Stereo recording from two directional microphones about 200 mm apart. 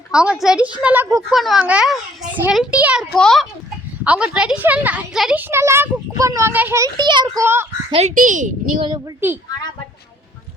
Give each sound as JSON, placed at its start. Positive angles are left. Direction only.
{"t": 0.1, "sound": "a child's voice", "side_deg": -5}
{"t": 7.9, "sound": "speech", "side_deg": -35}